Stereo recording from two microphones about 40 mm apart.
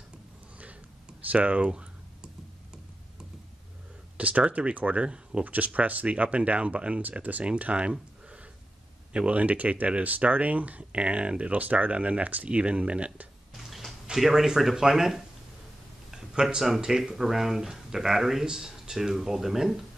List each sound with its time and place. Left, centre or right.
1.2 s speech: right
1.7 s a sound: right
4.2 s speech: right
5.0 s speech: right
5.4 s speech: right
9.1 s speech: right
13.5 s cupboard open or close: centre
14.1 s speech: centre